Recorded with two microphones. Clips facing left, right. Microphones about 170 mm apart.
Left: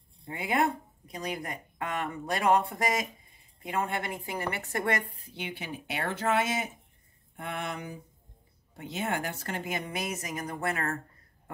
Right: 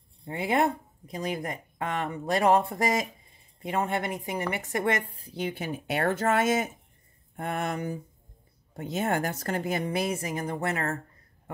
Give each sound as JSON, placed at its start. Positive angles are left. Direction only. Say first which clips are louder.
{"t": 0.3, "sound": "speech", "louder": "right 3 dB", "side_deg": -25}
{"t": 5.2, "sound": "a woman's voice", "louder": "right 7 dB", "side_deg": -40}